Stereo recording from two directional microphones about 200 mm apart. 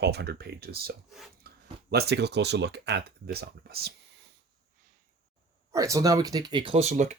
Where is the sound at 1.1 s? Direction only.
Centre (ahead or behind).